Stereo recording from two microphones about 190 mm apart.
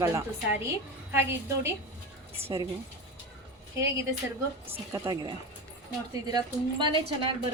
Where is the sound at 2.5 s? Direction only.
20° right (ahead or behind).